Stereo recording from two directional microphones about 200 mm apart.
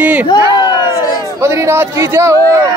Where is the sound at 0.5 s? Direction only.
20° left (ahead or behind).